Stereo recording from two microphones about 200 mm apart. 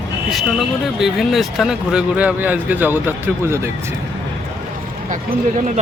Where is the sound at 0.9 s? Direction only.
Centre (ahead or behind).